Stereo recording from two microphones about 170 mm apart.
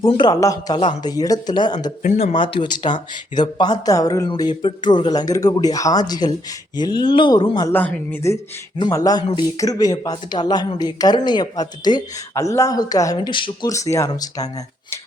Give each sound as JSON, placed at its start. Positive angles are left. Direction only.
{"t": 0.0, "sound": "speech", "side_deg": 25}
{"t": 2.0, "sound": "speech", "side_deg": 45}
{"t": 7.7, "sound": "speech", "side_deg": 10}